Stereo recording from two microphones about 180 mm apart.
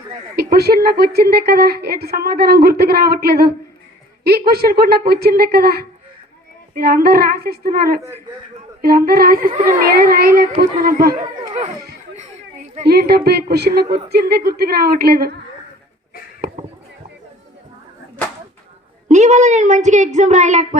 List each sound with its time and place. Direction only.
0.3 s a woman's voice: 60° right (ahead or behind)
10.6 s music: 50° right (ahead or behind)
11.2 s a sound: 40° right (ahead or behind)
12.8 s a woman's voice: 60° right (ahead or behind)
19.0 s speech: 40° right (ahead or behind)